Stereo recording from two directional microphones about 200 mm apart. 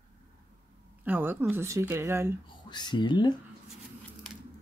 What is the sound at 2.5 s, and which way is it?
Speech, 20° left (ahead or behind).